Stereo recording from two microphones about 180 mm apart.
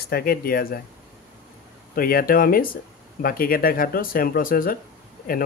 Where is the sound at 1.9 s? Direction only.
55° left (ahead or behind).